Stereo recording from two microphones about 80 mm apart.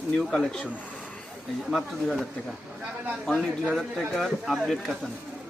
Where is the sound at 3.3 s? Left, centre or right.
Centre.